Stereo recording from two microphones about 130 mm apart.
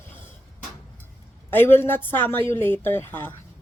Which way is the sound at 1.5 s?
15° left (ahead or behind).